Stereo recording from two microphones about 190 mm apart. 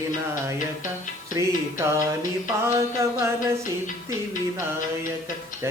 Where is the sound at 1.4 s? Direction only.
15° right (ahead or behind).